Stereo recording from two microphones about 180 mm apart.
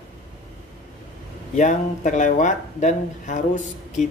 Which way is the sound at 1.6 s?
45° left (ahead or behind).